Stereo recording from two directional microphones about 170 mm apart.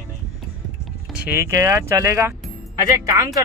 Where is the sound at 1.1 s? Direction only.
10° right (ahead or behind).